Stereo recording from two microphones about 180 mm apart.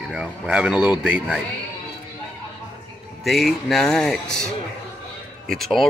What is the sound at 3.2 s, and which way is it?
Speech, centre (ahead or behind).